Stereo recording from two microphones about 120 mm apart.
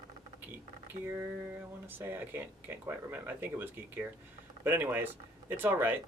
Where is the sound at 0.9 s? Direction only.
20° right (ahead or behind).